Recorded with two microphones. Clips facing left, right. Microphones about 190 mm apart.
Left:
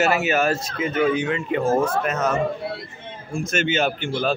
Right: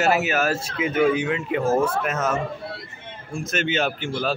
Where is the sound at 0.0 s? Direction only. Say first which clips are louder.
Left 1 dB; centre (ahead or behind).